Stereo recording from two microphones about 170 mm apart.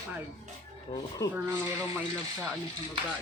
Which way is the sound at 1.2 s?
20° left (ahead or behind).